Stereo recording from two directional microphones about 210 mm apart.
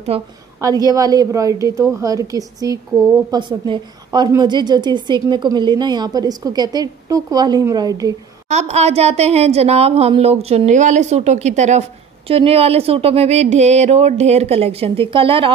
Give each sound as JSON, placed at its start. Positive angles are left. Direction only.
{"t": 0.1, "sound": "a woman's voice", "side_deg": -30}
{"t": 0.6, "sound": "a woman's voice", "side_deg": -15}
{"t": 8.5, "sound": "a woman's voice", "side_deg": -35}